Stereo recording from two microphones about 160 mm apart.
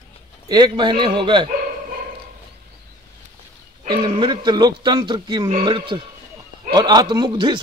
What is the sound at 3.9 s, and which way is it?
Speech, 30° right (ahead or behind).